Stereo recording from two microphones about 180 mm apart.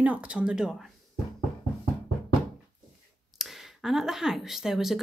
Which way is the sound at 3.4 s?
Centre (ahead or behind).